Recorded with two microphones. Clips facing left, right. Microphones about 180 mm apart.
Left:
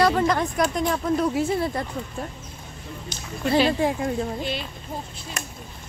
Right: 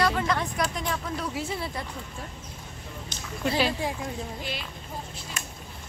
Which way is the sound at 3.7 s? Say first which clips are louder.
Left 7 dB; 55° left (ahead or behind).